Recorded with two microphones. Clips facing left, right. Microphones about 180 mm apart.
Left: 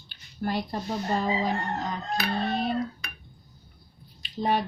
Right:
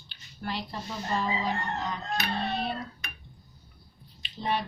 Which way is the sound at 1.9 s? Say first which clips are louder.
Left 3 dB; 45° left (ahead or behind).